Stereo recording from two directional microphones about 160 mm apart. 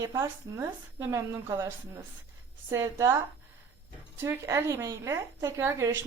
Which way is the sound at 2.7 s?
15° right (ahead or behind).